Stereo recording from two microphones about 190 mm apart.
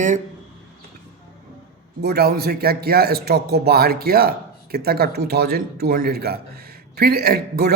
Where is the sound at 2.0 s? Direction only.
55° right (ahead or behind).